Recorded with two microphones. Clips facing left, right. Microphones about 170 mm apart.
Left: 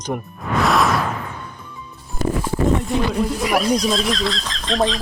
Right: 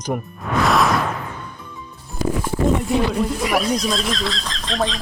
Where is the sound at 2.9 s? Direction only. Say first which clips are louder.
Right 1 dB; centre (ahead or behind).